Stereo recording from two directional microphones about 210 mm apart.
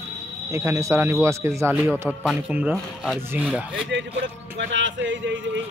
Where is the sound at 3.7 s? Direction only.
60° right (ahead or behind).